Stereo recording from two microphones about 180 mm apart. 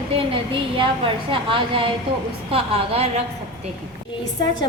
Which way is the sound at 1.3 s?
30° right (ahead or behind).